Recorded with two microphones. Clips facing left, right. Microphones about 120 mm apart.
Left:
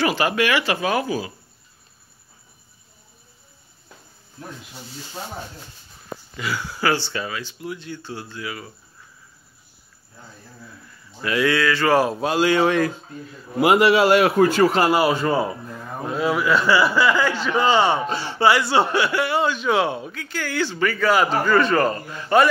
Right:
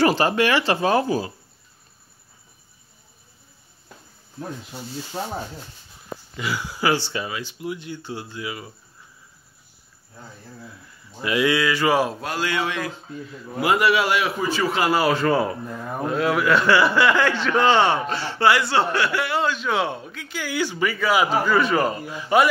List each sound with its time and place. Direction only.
0.0 s speech: 30° right (ahead or behind)
6.3 s speech: 15° right (ahead or behind)
11.1 s speech: 15° right (ahead or behind)
12.2 s a man's voice: 25° left (ahead or behind)
12.5 s speech: 45° left (ahead or behind)
13.6 s a man's voice: 25° left (ahead or behind)
14.2 s speech: 50° left (ahead or behind)
14.9 s a man's voice: 20° left (ahead or behind)
15.6 s a man's voice: 5° right (ahead or behind)
16.2 s a man's voice: 5° left (ahead or behind)